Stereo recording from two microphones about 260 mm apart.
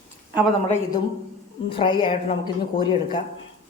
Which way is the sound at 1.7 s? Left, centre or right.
Centre.